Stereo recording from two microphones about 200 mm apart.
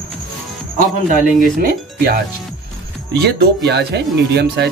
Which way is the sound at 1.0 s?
40° right (ahead or behind).